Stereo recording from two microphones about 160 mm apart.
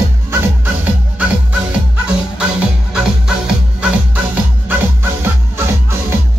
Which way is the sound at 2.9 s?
5° right (ahead or behind).